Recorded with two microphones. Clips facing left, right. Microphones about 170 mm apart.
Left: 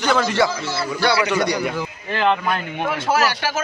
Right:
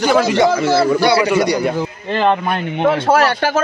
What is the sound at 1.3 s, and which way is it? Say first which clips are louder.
A man's voice: right 5 dB; 20° right (ahead or behind).